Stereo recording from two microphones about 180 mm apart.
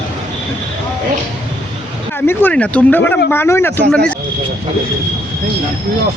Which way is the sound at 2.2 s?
10° left (ahead or behind).